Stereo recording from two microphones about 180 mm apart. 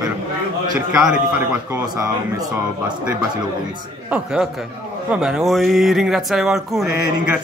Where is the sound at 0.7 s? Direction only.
10° right (ahead or behind).